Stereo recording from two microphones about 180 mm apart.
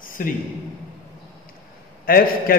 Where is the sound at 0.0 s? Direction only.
50° left (ahead or behind).